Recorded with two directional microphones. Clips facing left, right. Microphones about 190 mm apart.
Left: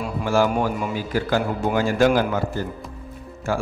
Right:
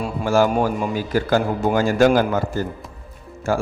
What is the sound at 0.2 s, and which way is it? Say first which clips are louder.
A man's voice: right 3 dB; 45° right (ahead or behind).